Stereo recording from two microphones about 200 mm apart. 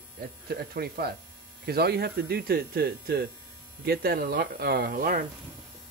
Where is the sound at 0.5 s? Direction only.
50° right (ahead or behind).